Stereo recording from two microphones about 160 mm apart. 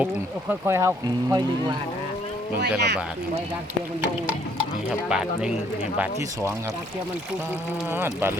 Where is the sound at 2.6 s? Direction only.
90° right.